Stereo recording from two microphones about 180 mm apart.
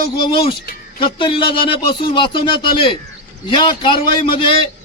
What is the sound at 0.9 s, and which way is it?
A man's voice, 30° left (ahead or behind).